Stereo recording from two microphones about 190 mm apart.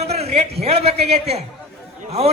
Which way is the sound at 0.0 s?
35° right (ahead or behind).